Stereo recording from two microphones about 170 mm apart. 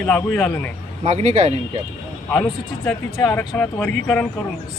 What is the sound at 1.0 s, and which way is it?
Speech, 40° right (ahead or behind).